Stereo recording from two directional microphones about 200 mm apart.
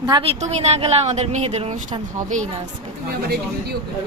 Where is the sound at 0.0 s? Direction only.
25° right (ahead or behind).